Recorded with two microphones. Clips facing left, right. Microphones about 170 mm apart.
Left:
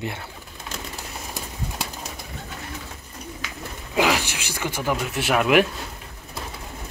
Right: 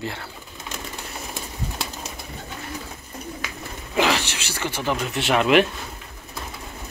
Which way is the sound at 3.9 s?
10° left (ahead or behind).